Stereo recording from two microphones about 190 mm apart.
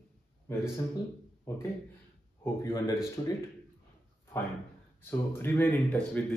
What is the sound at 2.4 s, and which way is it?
Speech, 15° left (ahead or behind).